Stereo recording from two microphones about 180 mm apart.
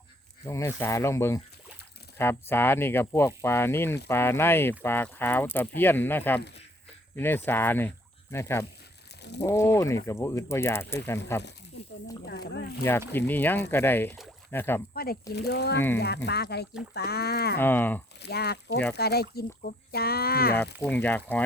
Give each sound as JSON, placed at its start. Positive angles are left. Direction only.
{"t": 0.4, "sound": "speech", "side_deg": 15}
{"t": 12.2, "sound": "speech", "side_deg": 65}
{"t": 13.1, "sound": "speech", "side_deg": 10}
{"t": 14.9, "sound": "speech", "side_deg": 55}
{"t": 17.6, "sound": "speech", "side_deg": 10}
{"t": 18.2, "sound": "speech", "side_deg": 60}
{"t": 20.8, "sound": "speech", "side_deg": 10}